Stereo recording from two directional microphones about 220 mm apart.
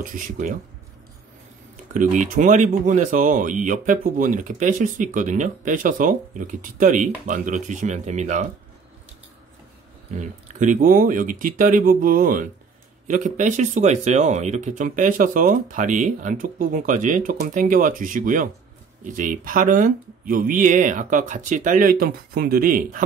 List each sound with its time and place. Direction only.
0.0 s speech: 35° right (ahead or behind)
2.0 s speech: 35° right (ahead or behind)
10.1 s speech: 30° right (ahead or behind)